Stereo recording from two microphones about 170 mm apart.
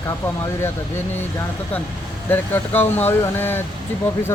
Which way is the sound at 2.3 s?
10° left (ahead or behind).